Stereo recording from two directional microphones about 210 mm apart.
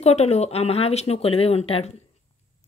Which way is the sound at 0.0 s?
30° left (ahead or behind).